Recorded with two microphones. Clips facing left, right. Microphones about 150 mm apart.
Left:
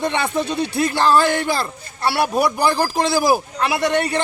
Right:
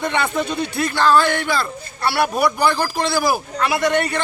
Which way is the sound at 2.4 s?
40° left (ahead or behind).